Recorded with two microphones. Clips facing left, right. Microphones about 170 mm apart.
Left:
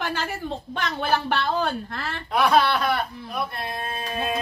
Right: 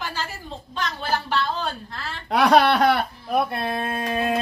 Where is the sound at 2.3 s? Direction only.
75° right (ahead or behind).